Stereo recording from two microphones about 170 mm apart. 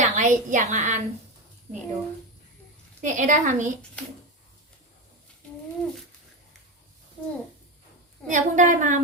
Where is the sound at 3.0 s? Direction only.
50° right (ahead or behind).